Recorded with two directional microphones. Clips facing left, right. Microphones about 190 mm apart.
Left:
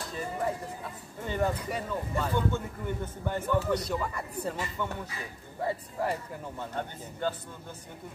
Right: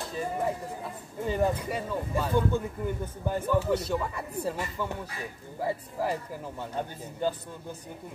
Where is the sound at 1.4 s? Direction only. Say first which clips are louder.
Right 1 dB; 5° right (ahead or behind).